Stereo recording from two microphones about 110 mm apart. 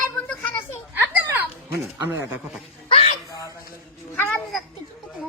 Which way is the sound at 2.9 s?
70° left (ahead or behind).